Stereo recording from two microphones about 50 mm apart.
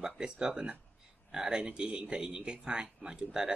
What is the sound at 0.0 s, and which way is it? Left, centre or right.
A man's voice, centre.